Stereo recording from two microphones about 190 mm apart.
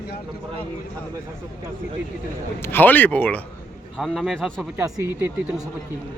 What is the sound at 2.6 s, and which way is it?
Speech, 10° left (ahead or behind).